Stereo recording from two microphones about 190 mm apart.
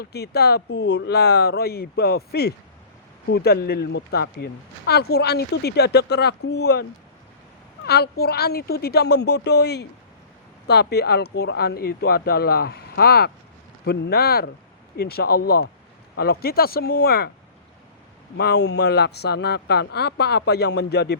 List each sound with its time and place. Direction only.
0.0 s speech: 60° left (ahead or behind)
7.9 s speech: 60° left (ahead or behind)
18.3 s speech: 60° left (ahead or behind)